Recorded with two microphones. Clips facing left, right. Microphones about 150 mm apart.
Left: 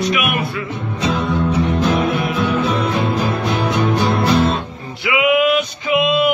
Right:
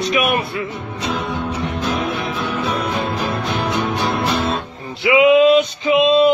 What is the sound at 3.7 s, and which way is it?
Music, centre (ahead or behind).